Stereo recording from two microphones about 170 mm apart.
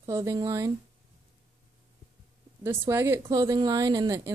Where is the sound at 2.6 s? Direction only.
15° right (ahead or behind).